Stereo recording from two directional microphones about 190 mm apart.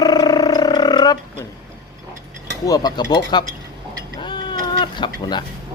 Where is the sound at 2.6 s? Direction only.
20° left (ahead or behind).